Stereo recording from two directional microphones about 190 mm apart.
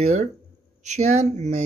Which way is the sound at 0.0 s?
35° right (ahead or behind).